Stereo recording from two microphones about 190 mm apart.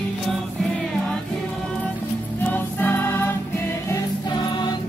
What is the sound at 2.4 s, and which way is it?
Music, 10° left (ahead or behind).